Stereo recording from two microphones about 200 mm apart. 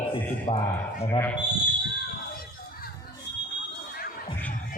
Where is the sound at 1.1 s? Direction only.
10° left (ahead or behind).